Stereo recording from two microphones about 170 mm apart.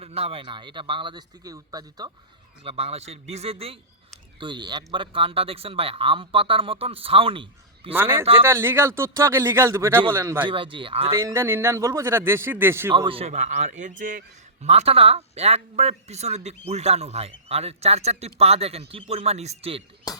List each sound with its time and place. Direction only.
0.0 s a man's voice: 35° right (ahead or behind)
2.6 s a man's voice: 35° right (ahead or behind)
7.9 s a man's voice: 15° right (ahead or behind)
8.2 s a man's voice: 30° right (ahead or behind)
8.4 s a man's voice: 15° right (ahead or behind)
10.4 s a man's voice: 30° right (ahead or behind)
11.1 s a man's voice: 15° right (ahead or behind)
13.1 s a man's voice: 35° right (ahead or behind)